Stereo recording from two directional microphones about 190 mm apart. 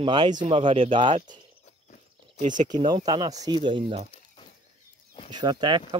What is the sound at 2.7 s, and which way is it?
Speech, 20° right (ahead or behind).